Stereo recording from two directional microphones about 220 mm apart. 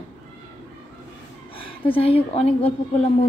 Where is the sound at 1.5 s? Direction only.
25° left (ahead or behind).